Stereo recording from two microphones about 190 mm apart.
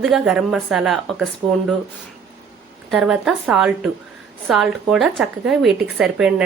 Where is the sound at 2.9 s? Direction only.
5° right (ahead or behind).